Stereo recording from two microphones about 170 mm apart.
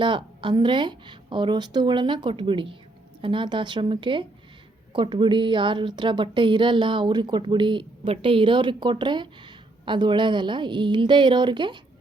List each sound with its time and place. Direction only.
0.0 s a woman's voice: 30° right (ahead or behind)